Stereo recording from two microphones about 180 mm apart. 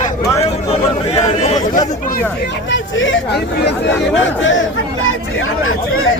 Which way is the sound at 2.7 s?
90° left.